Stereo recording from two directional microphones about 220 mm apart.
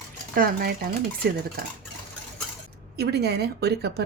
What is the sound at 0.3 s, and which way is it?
A woman's voice, 45° right (ahead or behind).